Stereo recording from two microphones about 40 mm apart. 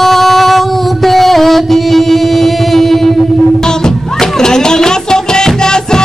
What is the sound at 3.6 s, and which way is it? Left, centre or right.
Music, centre.